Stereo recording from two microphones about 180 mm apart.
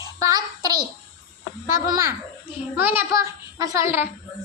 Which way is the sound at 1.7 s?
20° right (ahead or behind).